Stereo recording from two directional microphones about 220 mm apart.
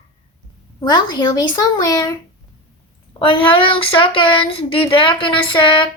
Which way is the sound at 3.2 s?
25° left (ahead or behind).